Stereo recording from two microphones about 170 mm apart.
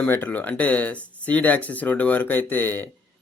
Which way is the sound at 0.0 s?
10° left (ahead or behind).